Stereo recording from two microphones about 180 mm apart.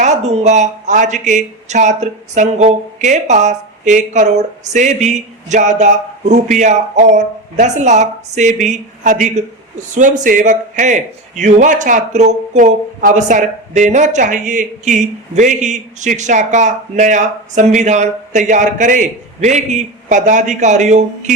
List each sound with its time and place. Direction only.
0.0 s a man's voice: 40° right (ahead or behind)